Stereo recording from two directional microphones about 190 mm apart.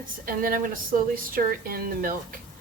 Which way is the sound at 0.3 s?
50° right (ahead or behind).